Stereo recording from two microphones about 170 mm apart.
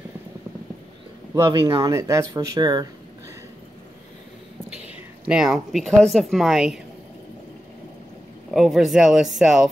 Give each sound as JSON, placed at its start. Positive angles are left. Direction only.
{"t": 1.3, "sound": "speech", "side_deg": -25}
{"t": 4.6, "sound": "speech", "side_deg": -5}
{"t": 8.5, "sound": "speech", "side_deg": 0}